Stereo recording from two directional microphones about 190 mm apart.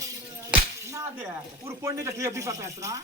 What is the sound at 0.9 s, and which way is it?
Speech, 15° right (ahead or behind).